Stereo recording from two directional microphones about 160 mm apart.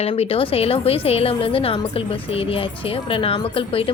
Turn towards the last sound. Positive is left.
turn(degrees=35)  # may be behind; listen again after turning